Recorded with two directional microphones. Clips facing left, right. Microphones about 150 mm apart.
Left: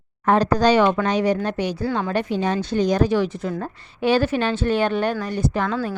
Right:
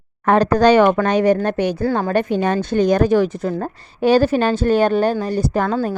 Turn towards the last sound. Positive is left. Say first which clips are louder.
# right 4 dB
turn(degrees=-40)  # may be behind; listen again after turning